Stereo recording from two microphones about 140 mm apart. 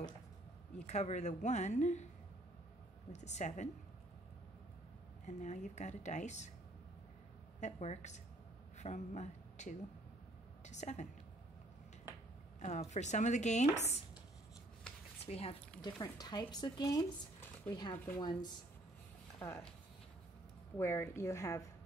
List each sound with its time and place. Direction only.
0.8 s speech: 55° left (ahead or behind)
3.1 s speech: 55° left (ahead or behind)
5.2 s speech: 55° left (ahead or behind)
7.6 s a woman's voice: 55° left (ahead or behind)
12.5 s speech: 55° left (ahead or behind)
15.2 s speech: 45° left (ahead or behind)
15.8 s speech: 30° left (ahead or behind)
17.9 s a woman's voice: 10° left (ahead or behind)
20.7 s speech: 15° left (ahead or behind)